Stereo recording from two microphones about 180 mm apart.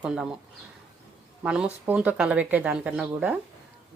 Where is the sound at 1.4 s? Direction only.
5° right (ahead or behind).